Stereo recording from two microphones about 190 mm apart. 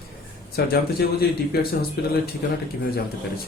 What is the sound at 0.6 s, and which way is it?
Speech, 55° left (ahead or behind).